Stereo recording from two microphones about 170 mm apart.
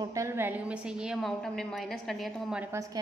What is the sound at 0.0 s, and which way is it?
A woman's voice, 20° right (ahead or behind).